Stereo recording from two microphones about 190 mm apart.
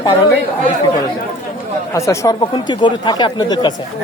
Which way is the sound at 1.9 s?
15° left (ahead or behind).